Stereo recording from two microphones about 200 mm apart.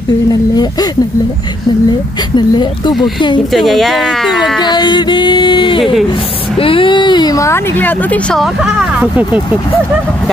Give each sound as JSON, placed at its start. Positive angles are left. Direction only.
{"t": 0.3, "sound": "speech", "side_deg": 20}
{"t": 2.3, "sound": "speech", "side_deg": 20}
{"t": 3.5, "sound": "speech", "side_deg": 0}
{"t": 4.6, "sound": "speech", "side_deg": 20}